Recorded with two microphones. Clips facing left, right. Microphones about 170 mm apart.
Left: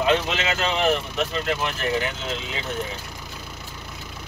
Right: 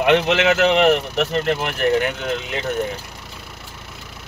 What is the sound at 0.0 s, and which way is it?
Speech, 70° right (ahead or behind).